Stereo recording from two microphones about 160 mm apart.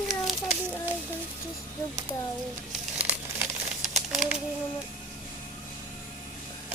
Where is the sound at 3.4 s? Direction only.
Centre (ahead or behind).